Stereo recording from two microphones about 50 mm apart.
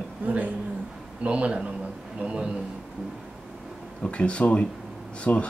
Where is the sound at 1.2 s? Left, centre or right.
Right.